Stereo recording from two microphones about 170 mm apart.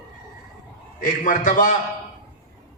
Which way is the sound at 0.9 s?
50° left (ahead or behind).